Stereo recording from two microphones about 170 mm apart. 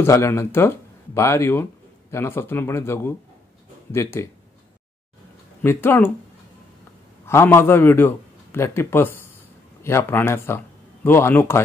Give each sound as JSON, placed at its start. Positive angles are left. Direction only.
{"t": 0.0, "sound": "a man's voice", "side_deg": 15}
{"t": 5.6, "sound": "a man's voice", "side_deg": 10}
{"t": 7.2, "sound": "a man's voice", "side_deg": 15}